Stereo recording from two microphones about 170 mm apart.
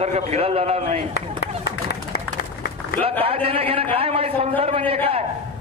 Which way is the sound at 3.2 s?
35° right (ahead or behind).